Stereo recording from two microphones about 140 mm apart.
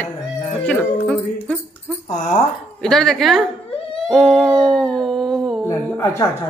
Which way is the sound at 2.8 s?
5° left (ahead or behind).